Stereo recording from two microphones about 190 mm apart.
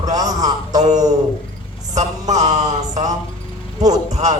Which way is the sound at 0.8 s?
40° right (ahead or behind).